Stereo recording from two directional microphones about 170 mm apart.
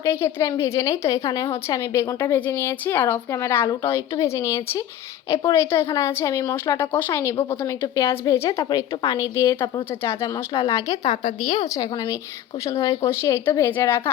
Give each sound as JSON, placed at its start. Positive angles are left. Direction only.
{"t": 0.0, "sound": "a woman's voice", "side_deg": 15}